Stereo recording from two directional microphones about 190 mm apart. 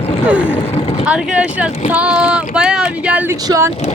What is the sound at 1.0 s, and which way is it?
Speech, 5° right (ahead or behind).